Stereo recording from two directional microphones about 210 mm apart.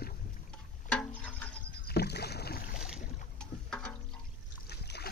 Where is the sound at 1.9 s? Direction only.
50° left (ahead or behind).